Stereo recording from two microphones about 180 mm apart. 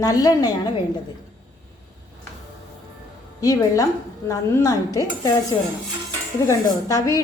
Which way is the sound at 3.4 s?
20° left (ahead or behind).